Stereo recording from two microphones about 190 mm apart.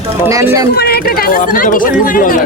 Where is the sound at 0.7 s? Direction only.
55° left (ahead or behind).